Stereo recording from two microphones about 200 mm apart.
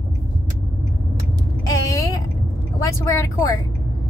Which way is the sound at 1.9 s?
15° left (ahead or behind).